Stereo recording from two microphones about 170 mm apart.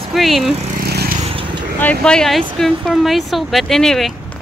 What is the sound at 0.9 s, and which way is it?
Vehicle, 65° right (ahead or behind).